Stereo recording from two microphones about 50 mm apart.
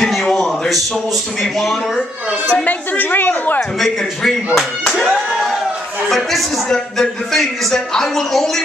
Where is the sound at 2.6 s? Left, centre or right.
Left.